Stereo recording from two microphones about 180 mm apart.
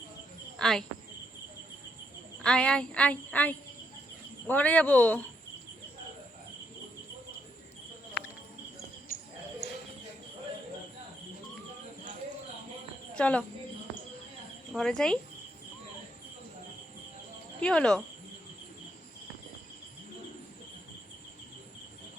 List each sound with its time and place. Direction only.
0.6 s speech: 5° left (ahead or behind)
2.4 s a sound: 5° left (ahead or behind)
9.1 s cricket: 50° left (ahead or behind)
9.6 s cricket: 65° left (ahead or behind)
13.1 s a woman's voice: 5° left (ahead or behind)
14.7 s speech: 5° left (ahead or behind)
17.6 s speech: 5° left (ahead or behind)